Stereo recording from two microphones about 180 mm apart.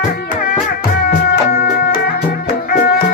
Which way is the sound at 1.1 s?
50° left (ahead or behind).